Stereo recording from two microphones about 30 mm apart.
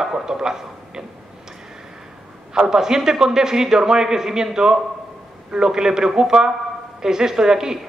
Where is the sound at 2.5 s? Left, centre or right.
Centre.